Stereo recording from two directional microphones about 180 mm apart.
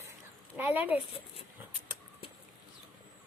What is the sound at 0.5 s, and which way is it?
Speech, 10° right (ahead or behind).